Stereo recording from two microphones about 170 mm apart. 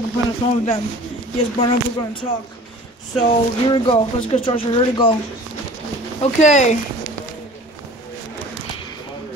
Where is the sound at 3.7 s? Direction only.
30° left (ahead or behind).